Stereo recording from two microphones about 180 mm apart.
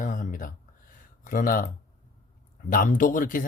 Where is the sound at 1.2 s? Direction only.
50° left (ahead or behind).